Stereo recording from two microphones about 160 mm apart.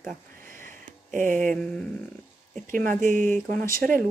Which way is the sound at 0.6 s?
55° right (ahead or behind).